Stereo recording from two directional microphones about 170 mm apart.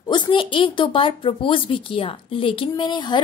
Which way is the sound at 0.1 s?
30° left (ahead or behind).